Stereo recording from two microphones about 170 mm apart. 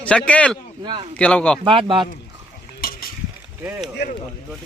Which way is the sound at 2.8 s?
60° left (ahead or behind).